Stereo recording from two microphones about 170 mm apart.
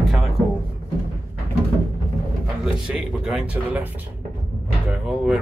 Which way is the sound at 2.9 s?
5° right (ahead or behind).